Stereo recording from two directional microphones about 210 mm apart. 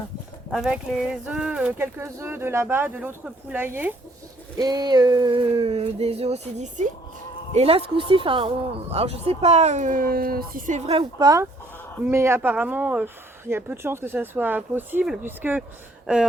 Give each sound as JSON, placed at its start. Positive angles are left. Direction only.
{"t": 0.5, "sound": "speech", "side_deg": -5}
{"t": 4.5, "sound": "a sound", "side_deg": -20}
{"t": 7.5, "sound": "speech", "side_deg": -30}
{"t": 11.2, "sound": "speech", "side_deg": -15}